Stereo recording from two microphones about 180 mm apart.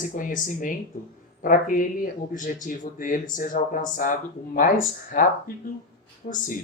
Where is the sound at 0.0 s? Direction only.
45° left (ahead or behind).